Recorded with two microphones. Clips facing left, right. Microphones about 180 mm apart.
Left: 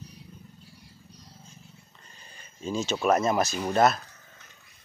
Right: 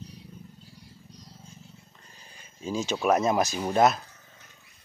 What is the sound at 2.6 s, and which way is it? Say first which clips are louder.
Speech: even; 10° right (ahead or behind).